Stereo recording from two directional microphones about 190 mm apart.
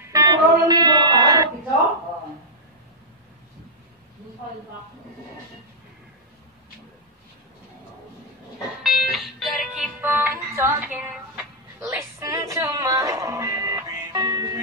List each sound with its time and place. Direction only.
0.0 s music: 20° right (ahead or behind)
8.8 s music: centre (ahead or behind)
10.0 s music: 10° right (ahead or behind)